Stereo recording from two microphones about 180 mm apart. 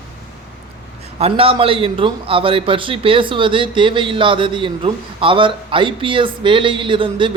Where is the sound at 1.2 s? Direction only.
30° right (ahead or behind).